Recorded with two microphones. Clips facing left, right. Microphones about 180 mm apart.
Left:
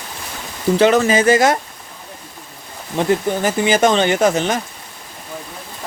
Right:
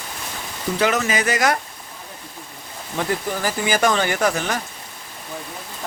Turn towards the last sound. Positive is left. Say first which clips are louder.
# left 6 dB
turn(degrees=20)  # may be behind; listen again after turning